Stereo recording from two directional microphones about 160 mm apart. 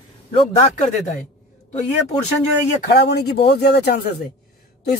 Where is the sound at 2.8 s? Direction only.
90° left.